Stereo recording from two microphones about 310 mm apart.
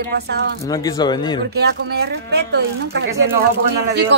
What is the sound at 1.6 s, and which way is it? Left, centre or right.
Speech, right.